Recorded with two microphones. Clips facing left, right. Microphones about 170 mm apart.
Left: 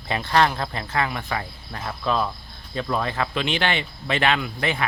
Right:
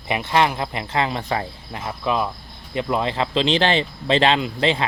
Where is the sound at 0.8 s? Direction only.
25° right (ahead or behind).